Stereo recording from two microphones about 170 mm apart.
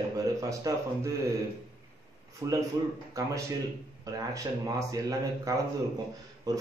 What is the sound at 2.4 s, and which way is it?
A man's voice, 20° right (ahead or behind).